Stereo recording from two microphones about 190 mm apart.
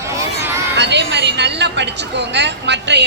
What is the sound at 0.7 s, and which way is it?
A woman's voice, 65° right (ahead or behind).